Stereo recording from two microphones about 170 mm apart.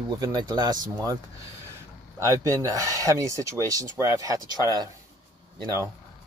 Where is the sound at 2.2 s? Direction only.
15° right (ahead or behind).